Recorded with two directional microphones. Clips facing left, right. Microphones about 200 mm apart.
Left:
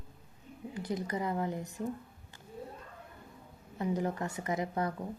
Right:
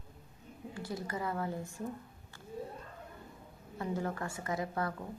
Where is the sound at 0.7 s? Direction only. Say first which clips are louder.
Left 4 dB; 20° left (ahead or behind).